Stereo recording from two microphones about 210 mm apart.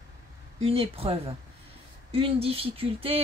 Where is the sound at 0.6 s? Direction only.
25° right (ahead or behind).